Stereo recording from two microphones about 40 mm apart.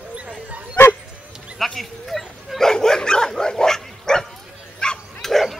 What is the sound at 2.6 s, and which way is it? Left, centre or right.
Dog, centre.